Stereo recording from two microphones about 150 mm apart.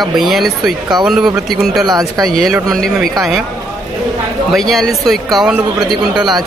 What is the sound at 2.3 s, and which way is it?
Speech, centre (ahead or behind).